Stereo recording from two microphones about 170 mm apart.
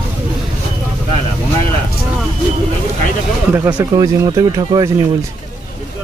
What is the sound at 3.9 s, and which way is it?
Speech, 20° right (ahead or behind).